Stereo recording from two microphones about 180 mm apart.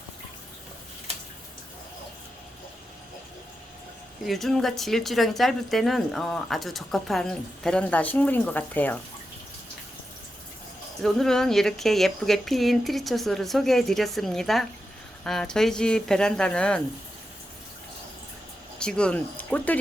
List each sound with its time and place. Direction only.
4.3 s speech: centre (ahead or behind)
11.0 s speech: centre (ahead or behind)
18.8 s speech: 5° left (ahead or behind)